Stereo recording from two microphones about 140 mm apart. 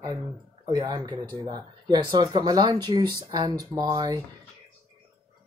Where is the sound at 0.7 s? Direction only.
30° right (ahead or behind).